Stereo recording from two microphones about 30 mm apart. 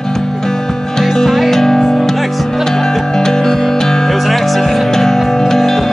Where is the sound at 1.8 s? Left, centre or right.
Centre.